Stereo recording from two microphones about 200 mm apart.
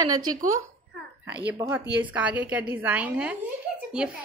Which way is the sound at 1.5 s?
10° right (ahead or behind).